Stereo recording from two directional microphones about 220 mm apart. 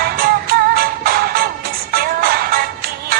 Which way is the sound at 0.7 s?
40° right (ahead or behind).